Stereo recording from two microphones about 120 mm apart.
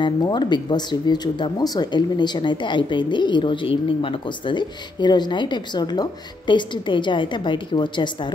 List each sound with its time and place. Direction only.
0.0 s speech: 40° left (ahead or behind)